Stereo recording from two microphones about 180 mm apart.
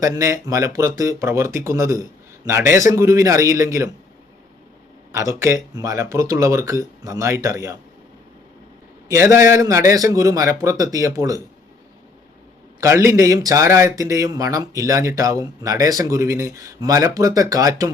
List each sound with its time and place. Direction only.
0.0 s speech: 20° right (ahead or behind)
5.1 s speech: 15° right (ahead or behind)
9.0 s speech: 15° right (ahead or behind)
12.8 s speech: 15° right (ahead or behind)